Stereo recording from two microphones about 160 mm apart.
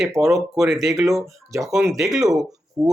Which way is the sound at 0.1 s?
20° right (ahead or behind).